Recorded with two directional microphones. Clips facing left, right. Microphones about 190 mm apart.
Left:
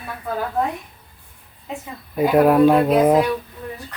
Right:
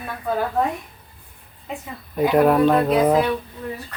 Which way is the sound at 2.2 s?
5° left (ahead or behind).